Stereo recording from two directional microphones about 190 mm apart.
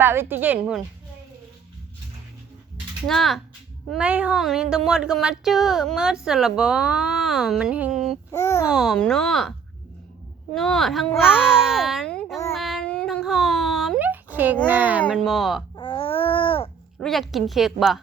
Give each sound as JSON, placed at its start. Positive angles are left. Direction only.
{"t": 0.0, "sound": "a woman's voice", "side_deg": -10}
{"t": 3.1, "sound": "speech", "side_deg": 0}
{"t": 8.3, "sound": "a child's voice", "side_deg": 15}
{"t": 8.6, "sound": "speech", "side_deg": 0}
{"t": 12.5, "sound": "a sound", "side_deg": 0}
{"t": 14.7, "sound": "a woman's voice", "side_deg": -10}
{"t": 15.7, "sound": "baby cry", "side_deg": 25}
{"t": 17.0, "sound": "speech", "side_deg": 0}